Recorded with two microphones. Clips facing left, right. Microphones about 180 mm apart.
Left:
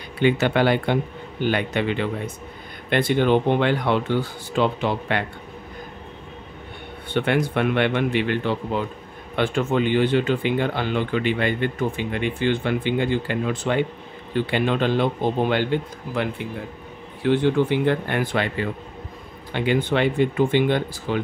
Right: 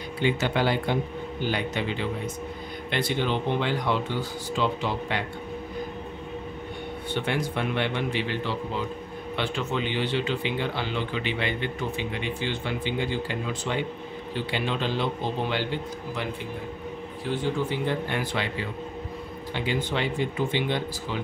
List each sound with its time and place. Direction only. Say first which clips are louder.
0.2 s speech: left 6 dB; 60° left (ahead or behind)
7.1 s speech: left 7 dB; 60° left (ahead or behind)
17.2 s speech: left 9 dB; 65° left (ahead or behind)